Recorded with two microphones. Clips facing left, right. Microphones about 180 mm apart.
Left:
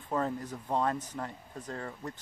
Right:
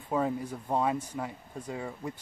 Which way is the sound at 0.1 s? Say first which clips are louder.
Right 3 dB; 10° right (ahead or behind).